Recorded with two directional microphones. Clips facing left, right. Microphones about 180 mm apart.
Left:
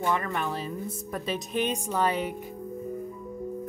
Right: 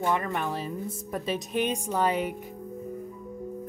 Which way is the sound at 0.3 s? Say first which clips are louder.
Even; 15° right (ahead or behind).